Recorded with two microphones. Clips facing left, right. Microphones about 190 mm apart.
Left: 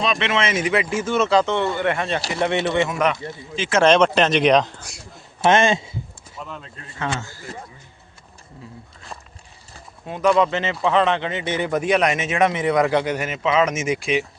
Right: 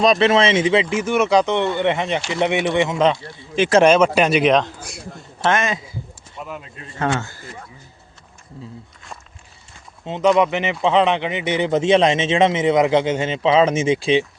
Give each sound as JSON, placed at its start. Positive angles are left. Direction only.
{"t": 0.0, "sound": "speech", "side_deg": -35}
{"t": 3.8, "sound": "speech", "side_deg": -10}
{"t": 5.4, "sound": "a man's voice", "side_deg": 25}
{"t": 6.4, "sound": "speech", "side_deg": -10}
{"t": 7.1, "sound": "a man's voice", "side_deg": -60}
{"t": 10.1, "sound": "speech", "side_deg": -20}